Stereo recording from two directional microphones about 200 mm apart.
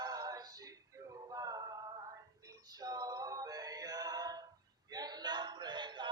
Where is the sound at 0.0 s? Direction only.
20° right (ahead or behind).